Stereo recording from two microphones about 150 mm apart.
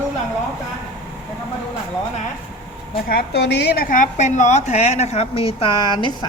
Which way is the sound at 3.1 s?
90° left.